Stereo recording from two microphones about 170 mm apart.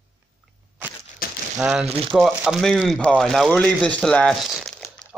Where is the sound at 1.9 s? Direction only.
35° right (ahead or behind).